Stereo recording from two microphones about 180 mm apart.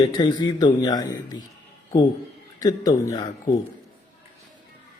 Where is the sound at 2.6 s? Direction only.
20° left (ahead or behind).